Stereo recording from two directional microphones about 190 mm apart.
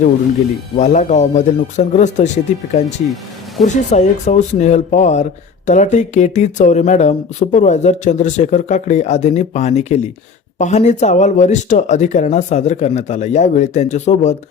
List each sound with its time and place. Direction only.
0.8 s speech: 40° left (ahead or behind)